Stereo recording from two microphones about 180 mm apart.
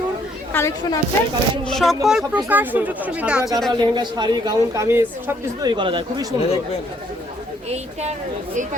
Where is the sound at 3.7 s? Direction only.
25° right (ahead or behind).